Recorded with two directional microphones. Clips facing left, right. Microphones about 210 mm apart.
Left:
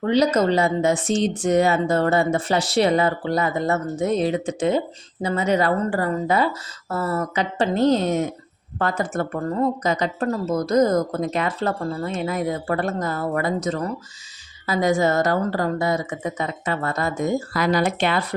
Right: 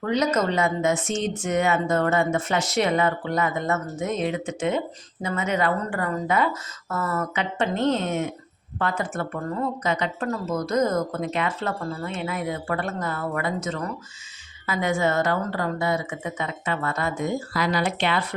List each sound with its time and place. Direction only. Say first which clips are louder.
0.0 s speech: left 4 dB; 30° left (ahead or behind)